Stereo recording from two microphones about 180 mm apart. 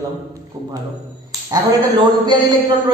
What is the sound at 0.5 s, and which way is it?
A man's voice, 20° right (ahead or behind).